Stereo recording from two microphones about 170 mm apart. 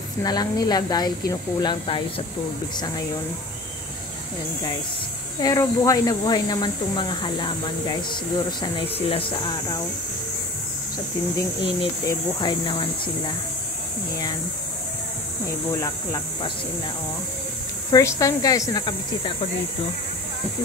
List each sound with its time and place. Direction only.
0.2 s speech: 25° left (ahead or behind)
5.4 s speech: 20° left (ahead or behind)
12.1 s speech: 25° left (ahead or behind)
15.7 s speech: 20° left (ahead or behind)
17.9 s speech: 20° left (ahead or behind)